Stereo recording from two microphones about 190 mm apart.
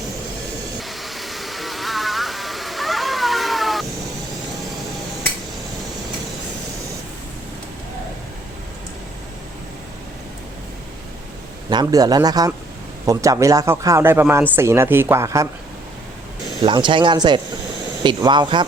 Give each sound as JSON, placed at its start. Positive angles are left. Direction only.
{"t": 0.8, "sound": "music", "side_deg": 0}
{"t": 11.7, "sound": "a man's voice", "side_deg": -20}
{"t": 16.6, "sound": "a man's voice", "side_deg": -25}